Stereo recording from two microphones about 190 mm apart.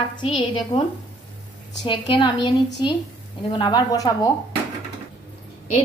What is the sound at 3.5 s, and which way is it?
Speech, 25° left (ahead or behind).